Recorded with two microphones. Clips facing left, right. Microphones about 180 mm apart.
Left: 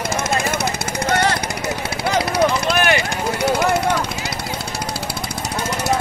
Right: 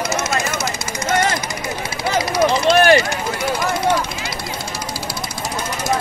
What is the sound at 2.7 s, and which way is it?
Run, 30° right (ahead or behind).